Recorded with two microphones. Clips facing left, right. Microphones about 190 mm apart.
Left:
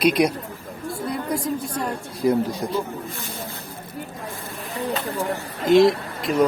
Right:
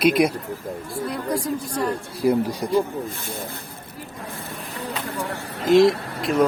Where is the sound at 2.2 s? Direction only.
5° right (ahead or behind).